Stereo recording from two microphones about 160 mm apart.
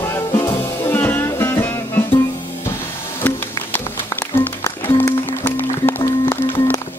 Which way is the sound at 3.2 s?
10° left (ahead or behind).